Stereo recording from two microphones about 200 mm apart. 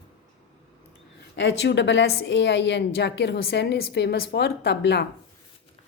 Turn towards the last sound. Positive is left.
turn(degrees=55)  # may be behind; listen again after turning